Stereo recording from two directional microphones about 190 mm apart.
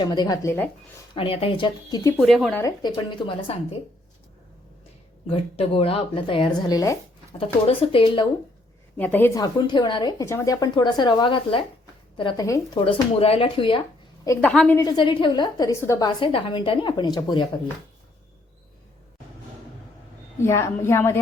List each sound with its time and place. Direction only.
0.0 s a woman's voice: 20° left (ahead or behind)
2.1 s speech: centre (ahead or behind)
2.6 s a woman's voice: 20° left (ahead or behind)
5.3 s a woman's voice: 30° left (ahead or behind)
7.3 s a woman's voice: 30° left (ahead or behind)
9.0 s a woman's voice: 10° left (ahead or behind)
12.8 s a woman's voice: 30° left (ahead or behind)
14.4 s speech: 5° left (ahead or behind)
14.8 s a woman's voice: 20° left (ahead or behind)
20.4 s a woman's voice: 15° left (ahead or behind)